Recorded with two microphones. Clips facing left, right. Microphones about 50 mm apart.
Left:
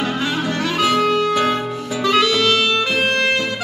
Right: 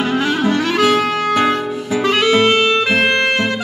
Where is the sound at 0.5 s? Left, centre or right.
Right.